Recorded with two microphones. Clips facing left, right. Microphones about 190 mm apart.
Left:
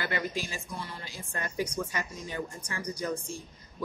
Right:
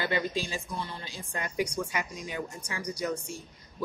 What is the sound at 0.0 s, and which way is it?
A woman's voice, 20° right (ahead or behind).